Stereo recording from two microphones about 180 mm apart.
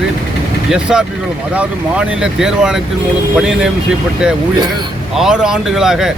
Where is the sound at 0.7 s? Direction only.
5° right (ahead or behind).